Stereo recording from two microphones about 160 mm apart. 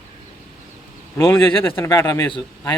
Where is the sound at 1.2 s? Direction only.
15° left (ahead or behind).